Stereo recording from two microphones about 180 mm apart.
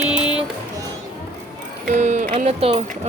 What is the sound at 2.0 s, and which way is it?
Speech, 40° right (ahead or behind).